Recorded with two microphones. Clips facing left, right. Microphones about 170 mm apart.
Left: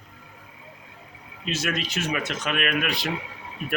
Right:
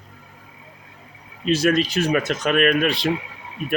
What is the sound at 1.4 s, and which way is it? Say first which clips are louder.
Speech: right 10 dB; 35° right (ahead or behind).